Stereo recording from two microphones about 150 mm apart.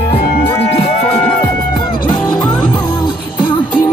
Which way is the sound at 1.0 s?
10° left (ahead or behind).